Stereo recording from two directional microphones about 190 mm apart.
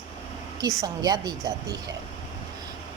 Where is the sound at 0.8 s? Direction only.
20° right (ahead or behind).